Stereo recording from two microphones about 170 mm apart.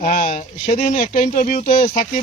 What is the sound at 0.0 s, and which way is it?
Speech, 45° left (ahead or behind).